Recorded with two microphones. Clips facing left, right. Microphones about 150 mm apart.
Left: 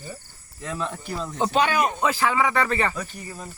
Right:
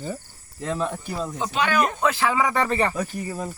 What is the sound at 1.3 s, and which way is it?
Speech, 30° left (ahead or behind).